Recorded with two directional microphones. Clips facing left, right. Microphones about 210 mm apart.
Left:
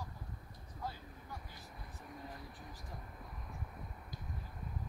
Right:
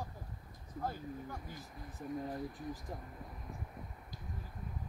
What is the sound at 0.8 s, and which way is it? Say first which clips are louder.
Vehicle: right 6 dB; 45° right (ahead or behind).